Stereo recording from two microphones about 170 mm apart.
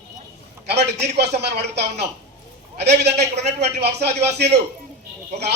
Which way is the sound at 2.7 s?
80° right.